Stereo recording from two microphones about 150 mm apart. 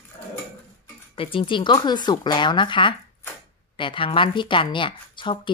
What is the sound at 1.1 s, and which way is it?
A woman's voice, 35° left (ahead or behind).